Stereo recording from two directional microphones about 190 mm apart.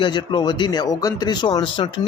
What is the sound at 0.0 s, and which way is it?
Speech, 25° left (ahead or behind).